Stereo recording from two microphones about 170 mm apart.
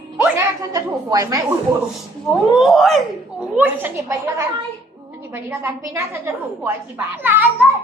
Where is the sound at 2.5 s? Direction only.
Centre (ahead or behind).